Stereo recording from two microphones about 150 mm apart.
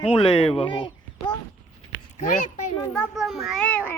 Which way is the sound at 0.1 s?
35° left (ahead or behind).